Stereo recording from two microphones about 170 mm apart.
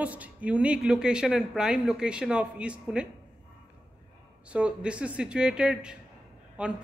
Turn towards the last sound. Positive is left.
turn(degrees=-5)  # may be behind; listen again after turning